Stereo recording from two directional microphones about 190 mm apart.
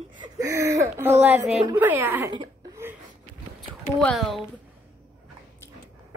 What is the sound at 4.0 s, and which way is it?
Speech, 5° left (ahead or behind).